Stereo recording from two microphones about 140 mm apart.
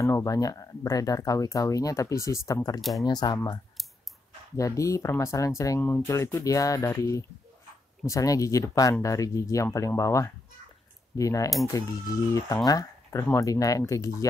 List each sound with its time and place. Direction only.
0.0 s speech: 20° left (ahead or behind)
2.8 s speech: centre (ahead or behind)
3.1 s speech: 30° left (ahead or behind)
4.6 s speech: 25° left (ahead or behind)